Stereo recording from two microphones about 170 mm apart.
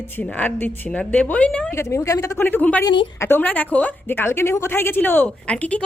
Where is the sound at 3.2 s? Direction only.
10° left (ahead or behind).